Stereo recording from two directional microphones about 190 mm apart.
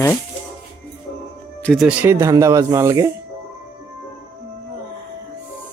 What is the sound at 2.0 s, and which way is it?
Speech, 15° right (ahead or behind).